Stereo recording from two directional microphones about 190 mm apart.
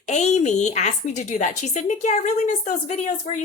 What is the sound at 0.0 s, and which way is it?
A woman's voice, 35° left (ahead or behind).